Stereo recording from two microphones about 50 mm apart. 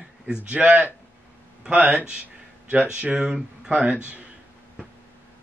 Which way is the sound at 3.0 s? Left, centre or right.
Centre.